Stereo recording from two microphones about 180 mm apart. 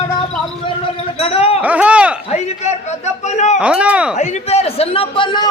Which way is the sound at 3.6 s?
5° right (ahead or behind).